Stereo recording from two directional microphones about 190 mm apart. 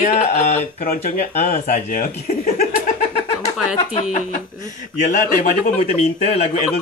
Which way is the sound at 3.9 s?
35° left (ahead or behind).